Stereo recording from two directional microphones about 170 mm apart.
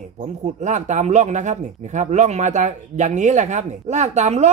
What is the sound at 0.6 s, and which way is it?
A man's voice, 45° right (ahead or behind).